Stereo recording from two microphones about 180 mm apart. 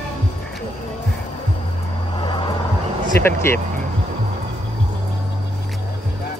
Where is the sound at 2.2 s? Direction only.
25° left (ahead or behind).